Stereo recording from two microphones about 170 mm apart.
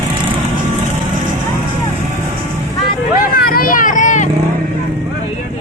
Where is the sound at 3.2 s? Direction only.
60° left (ahead or behind).